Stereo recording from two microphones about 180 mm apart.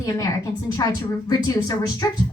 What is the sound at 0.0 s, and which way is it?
Speech, 20° left (ahead or behind).